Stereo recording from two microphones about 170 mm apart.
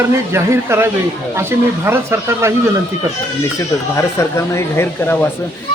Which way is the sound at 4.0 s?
15° left (ahead or behind).